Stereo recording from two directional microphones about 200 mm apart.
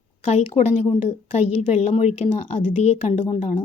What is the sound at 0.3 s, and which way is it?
A woman's voice, 30° left (ahead or behind).